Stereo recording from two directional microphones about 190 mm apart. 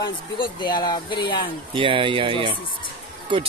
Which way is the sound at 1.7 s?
25° right (ahead or behind).